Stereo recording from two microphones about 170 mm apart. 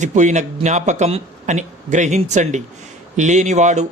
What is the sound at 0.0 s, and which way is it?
Speech, 45° right (ahead or behind).